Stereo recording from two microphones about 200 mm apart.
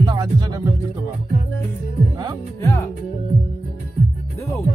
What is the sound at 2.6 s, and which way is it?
Music, 15° left (ahead or behind).